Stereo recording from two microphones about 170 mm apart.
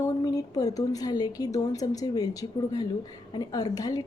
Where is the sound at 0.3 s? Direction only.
20° left (ahead or behind).